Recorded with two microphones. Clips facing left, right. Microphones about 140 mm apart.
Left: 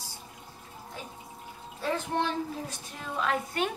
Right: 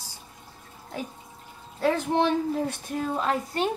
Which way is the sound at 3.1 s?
35° right (ahead or behind).